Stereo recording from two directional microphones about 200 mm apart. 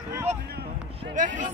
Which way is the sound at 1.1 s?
40° right (ahead or behind).